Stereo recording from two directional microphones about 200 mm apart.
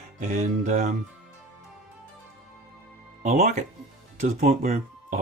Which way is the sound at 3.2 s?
35° right (ahead or behind).